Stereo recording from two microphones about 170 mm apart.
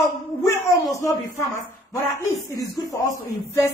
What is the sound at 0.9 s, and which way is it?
Speech, 20° left (ahead or behind).